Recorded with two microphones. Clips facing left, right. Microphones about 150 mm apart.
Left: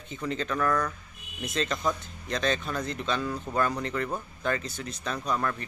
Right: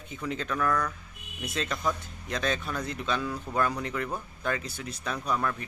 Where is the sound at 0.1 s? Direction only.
5° right (ahead or behind).